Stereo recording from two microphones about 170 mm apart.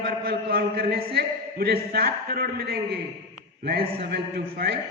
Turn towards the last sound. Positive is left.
turn(degrees=-75)  # may be behind; listen again after turning